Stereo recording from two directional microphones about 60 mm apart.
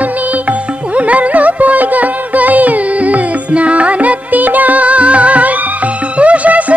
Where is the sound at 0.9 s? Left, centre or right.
Right.